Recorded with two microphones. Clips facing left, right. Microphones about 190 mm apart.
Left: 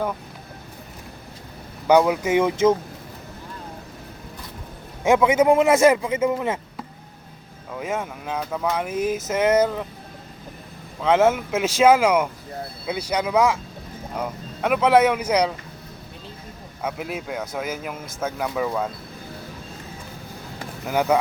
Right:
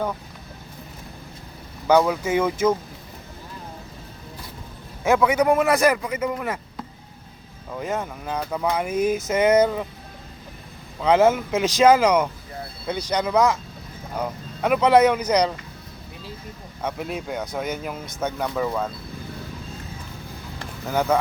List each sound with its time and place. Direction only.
1.9 s a man's voice: 15° left (ahead or behind)
5.0 s a man's voice: 20° left (ahead or behind)
7.8 s speech: 5° left (ahead or behind)
11.0 s speech: centre (ahead or behind)
16.8 s speech: 5° left (ahead or behind)
20.6 s vehicle: 10° left (ahead or behind)